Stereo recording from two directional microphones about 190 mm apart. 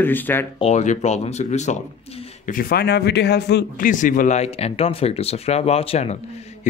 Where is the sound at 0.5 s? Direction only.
35° left (ahead or behind).